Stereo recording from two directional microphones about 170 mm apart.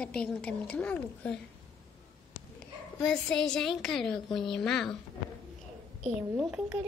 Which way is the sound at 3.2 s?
5° left (ahead or behind).